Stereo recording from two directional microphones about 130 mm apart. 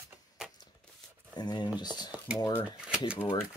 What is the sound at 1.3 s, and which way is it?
Speech, 35° left (ahead or behind).